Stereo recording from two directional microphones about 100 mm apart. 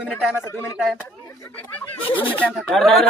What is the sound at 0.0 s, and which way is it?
Speech, 5° right (ahead or behind).